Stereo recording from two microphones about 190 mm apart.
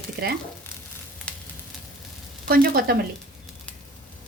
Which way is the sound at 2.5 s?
55° right (ahead or behind).